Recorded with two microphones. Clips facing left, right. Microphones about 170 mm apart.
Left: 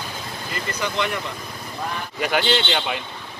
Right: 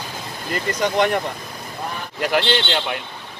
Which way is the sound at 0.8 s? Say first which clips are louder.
Right 7 dB; 50° right (ahead or behind).